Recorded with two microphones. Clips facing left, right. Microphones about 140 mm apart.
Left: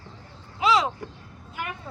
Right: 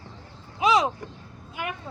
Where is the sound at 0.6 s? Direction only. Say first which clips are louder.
Right 1 dB; 20° right (ahead or behind).